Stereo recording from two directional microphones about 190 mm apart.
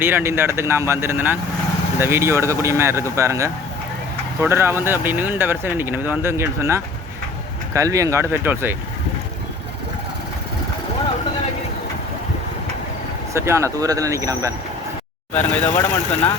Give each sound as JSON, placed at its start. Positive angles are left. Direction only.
{"t": 0.0, "sound": "speech", "side_deg": -10}
{"t": 13.3, "sound": "speech", "side_deg": -15}
{"t": 15.4, "sound": "speech", "side_deg": 10}